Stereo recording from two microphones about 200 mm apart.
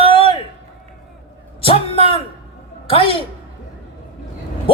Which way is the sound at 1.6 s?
30° left (ahead or behind).